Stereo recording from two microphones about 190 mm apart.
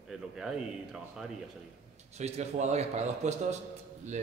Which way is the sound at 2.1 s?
35° right (ahead or behind).